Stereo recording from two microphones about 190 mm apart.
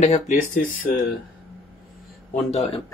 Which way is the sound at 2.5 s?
35° left (ahead or behind).